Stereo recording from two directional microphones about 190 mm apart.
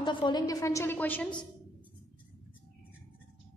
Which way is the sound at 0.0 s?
25° left (ahead or behind).